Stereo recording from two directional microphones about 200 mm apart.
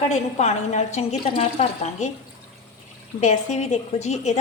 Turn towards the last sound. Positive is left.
turn(degrees=35)  # may be behind; listen again after turning